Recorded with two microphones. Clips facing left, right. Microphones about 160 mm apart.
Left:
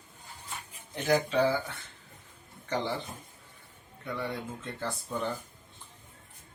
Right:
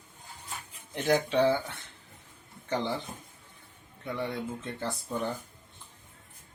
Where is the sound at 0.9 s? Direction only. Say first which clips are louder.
Right 1 dB; 20° right (ahead or behind).